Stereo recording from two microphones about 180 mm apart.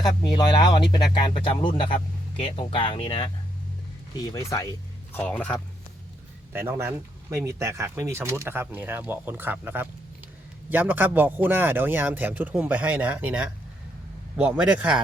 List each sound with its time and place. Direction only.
0.0 s a man's voice: 25° left (ahead or behind); by 5.6 s 5° left (ahead or behind)
6.5 s a man's voice: 15° right (ahead or behind)